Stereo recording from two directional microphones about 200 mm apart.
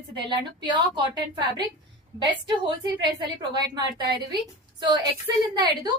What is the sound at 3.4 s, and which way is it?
A woman's voice, 20° right (ahead or behind).